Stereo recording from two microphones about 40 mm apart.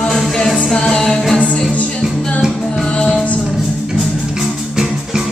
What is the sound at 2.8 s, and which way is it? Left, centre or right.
Music, centre.